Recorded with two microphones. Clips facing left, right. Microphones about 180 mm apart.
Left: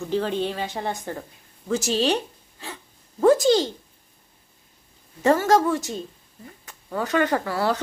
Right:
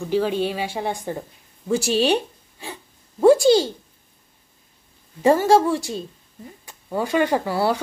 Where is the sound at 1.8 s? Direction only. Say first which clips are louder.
Right 3 dB; 15° right (ahead or behind).